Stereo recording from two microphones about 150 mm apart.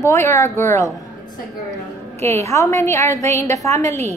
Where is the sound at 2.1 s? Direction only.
20° left (ahead or behind).